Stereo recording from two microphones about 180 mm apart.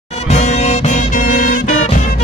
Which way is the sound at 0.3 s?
40° left (ahead or behind).